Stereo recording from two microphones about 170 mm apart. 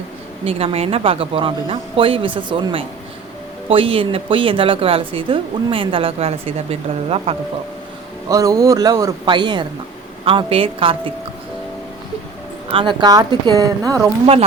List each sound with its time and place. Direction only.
0.4 s a woman's voice: 35° right (ahead or behind)
8.3 s a woman's voice: 20° right (ahead or behind)
12.7 s speech: 30° right (ahead or behind)